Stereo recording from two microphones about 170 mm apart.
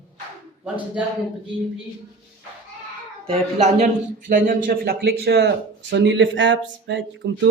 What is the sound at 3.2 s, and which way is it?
Speech, 40° right (ahead or behind).